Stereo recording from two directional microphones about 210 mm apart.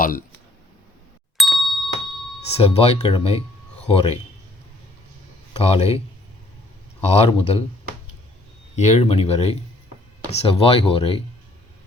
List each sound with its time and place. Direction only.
0.0 s speech: 40° left (ahead or behind)
1.4 s ding: centre (ahead or behind)
2.6 s speech: 30° left (ahead or behind)
5.5 s speech: 30° left (ahead or behind)
7.0 s speech: 30° left (ahead or behind)
8.7 s speech: 30° left (ahead or behind)